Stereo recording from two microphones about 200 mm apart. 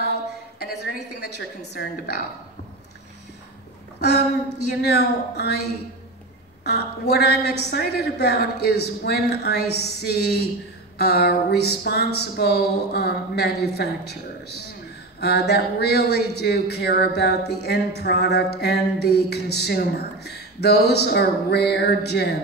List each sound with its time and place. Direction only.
0.6 s a sound: 50° left (ahead or behind)
1.7 s a woman's voice: 55° left (ahead or behind)
4.8 s a woman's voice: 55° left (ahead or behind)
6.6 s a woman's voice: 55° left (ahead or behind)